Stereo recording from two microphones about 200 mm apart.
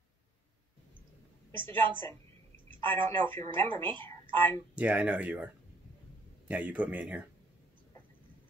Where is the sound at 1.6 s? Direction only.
25° right (ahead or behind).